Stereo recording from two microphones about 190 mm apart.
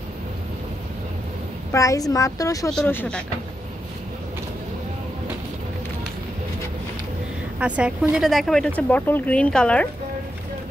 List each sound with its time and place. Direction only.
1.7 s a woman's voice: 15° left (ahead or behind)
2.7 s speech: 5° left (ahead or behind)
7.5 s speech: 5° right (ahead or behind)